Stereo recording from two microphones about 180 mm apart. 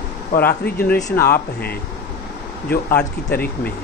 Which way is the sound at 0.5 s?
60° left (ahead or behind).